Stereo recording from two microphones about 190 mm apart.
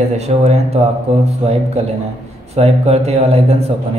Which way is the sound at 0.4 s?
35° right (ahead or behind).